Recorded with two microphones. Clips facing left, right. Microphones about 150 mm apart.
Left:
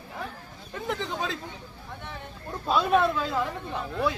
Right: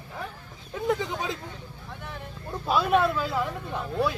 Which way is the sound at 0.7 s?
15° right (ahead or behind).